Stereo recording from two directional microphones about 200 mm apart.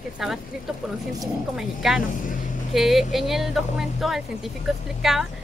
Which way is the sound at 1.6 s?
Centre (ahead or behind).